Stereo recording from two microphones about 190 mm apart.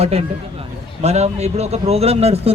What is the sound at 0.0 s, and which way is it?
A man's voice, 35° right (ahead or behind).